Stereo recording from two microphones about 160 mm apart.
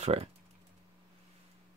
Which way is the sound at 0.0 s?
40° right (ahead or behind).